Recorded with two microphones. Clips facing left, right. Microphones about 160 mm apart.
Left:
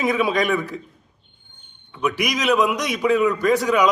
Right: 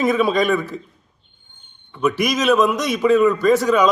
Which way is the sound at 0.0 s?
10° left (ahead or behind).